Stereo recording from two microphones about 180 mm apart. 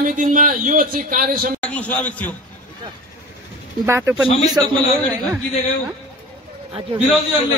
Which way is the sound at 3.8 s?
15° right (ahead or behind).